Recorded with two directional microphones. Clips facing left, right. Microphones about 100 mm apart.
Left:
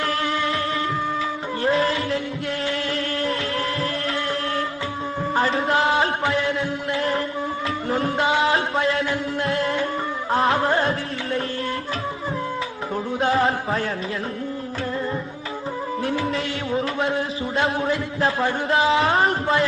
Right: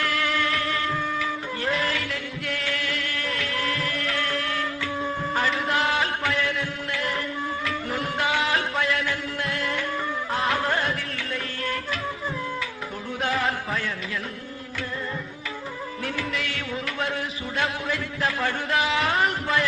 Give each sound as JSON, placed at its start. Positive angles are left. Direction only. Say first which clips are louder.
{"t": 0.0, "sound": "music", "louder": "left 2 dB", "side_deg": 25}
{"t": 1.6, "sound": "music", "louder": "left 7 dB", "side_deg": 30}
{"t": 5.3, "sound": "a sound", "louder": "left 6 dB", "side_deg": 30}
{"t": 10.3, "sound": "music", "louder": "left 6 dB", "side_deg": 30}
{"t": 13.2, "sound": "a sound", "louder": "left 5 dB", "side_deg": 30}
{"t": 16.0, "sound": "a man's voice", "louder": "left 5 dB", "side_deg": 25}